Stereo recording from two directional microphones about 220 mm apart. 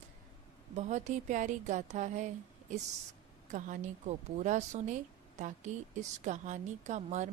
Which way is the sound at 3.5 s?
35° right (ahead or behind).